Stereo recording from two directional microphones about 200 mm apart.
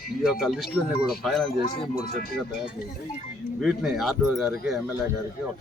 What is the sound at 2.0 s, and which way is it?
Speech, 45° left (ahead or behind).